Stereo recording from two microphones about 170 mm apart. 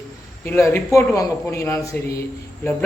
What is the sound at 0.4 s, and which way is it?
A man's voice, 15° left (ahead or behind).